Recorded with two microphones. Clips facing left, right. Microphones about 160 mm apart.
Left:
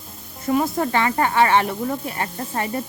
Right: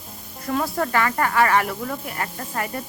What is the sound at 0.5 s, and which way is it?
Speech, 20° left (ahead or behind).